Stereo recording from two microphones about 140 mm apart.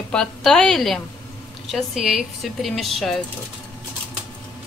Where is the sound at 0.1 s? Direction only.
5° left (ahead or behind).